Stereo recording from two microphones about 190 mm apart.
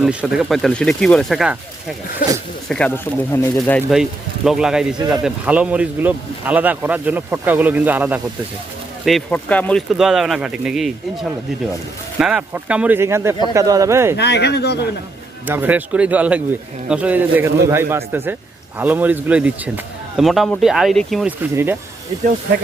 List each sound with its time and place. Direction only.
0.0 s speech: 5° right (ahead or behind)
2.6 s speech: 5° left (ahead or behind)
4.4 s speech: 5° right (ahead or behind)
9.0 s speech: 5° left (ahead or behind); by 14.2 s 15° right (ahead or behind)
14.2 s speech: 60° left (ahead or behind)
15.4 s speech: 10° right (ahead or behind)
21.5 s speech: 10° right (ahead or behind)